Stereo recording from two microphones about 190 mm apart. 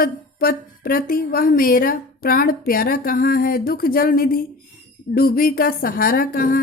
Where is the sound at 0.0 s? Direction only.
50° left (ahead or behind).